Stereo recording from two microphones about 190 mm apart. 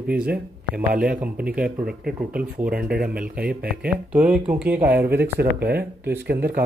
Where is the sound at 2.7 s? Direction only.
55° right (ahead or behind).